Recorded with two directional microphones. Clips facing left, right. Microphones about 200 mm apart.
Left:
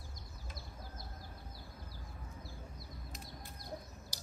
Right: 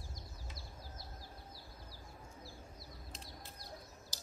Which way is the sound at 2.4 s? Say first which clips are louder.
Left 2 dB; 55° left (ahead or behind).